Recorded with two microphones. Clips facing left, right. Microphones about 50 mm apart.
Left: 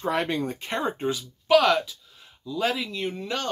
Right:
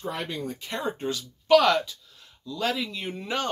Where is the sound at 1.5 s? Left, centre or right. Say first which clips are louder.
Even; centre.